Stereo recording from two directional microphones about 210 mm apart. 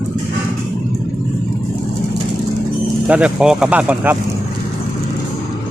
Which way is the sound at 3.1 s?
5° right (ahead or behind).